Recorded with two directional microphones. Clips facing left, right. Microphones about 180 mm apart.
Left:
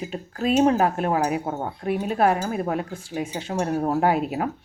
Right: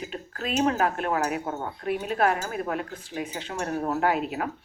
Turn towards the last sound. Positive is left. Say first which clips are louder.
# left 4 dB
turn(degrees=35)  # may be behind; listen again after turning